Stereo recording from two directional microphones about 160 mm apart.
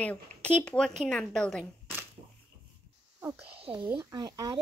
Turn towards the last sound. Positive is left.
turn(degrees=-20)  # may be behind; listen again after turning